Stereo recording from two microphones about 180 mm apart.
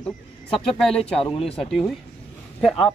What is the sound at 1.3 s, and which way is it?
Speech, 30° left (ahead or behind).